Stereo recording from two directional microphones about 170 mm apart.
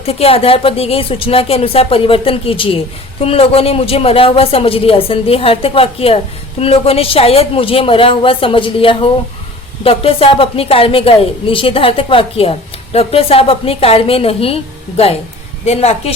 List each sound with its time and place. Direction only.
0.0 s a woman's voice: 35° left (ahead or behind)